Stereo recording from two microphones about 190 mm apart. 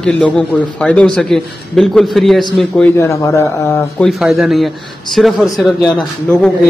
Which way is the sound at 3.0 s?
15° left (ahead or behind).